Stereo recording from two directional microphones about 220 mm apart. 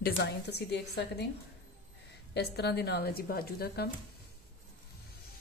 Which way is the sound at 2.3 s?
50° left (ahead or behind).